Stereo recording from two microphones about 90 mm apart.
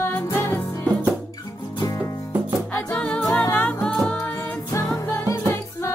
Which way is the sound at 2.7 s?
15° left (ahead or behind).